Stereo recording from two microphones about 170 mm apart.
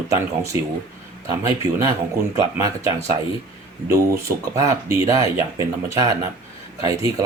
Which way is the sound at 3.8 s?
20° right (ahead or behind).